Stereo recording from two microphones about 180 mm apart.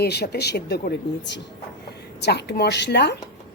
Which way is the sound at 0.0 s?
65° left (ahead or behind).